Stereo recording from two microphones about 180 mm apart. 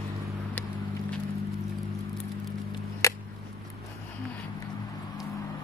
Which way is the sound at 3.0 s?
15° left (ahead or behind).